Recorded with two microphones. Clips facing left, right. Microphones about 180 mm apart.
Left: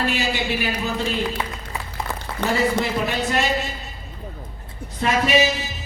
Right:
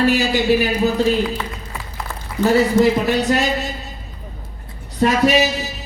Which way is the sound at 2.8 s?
40° right (ahead or behind).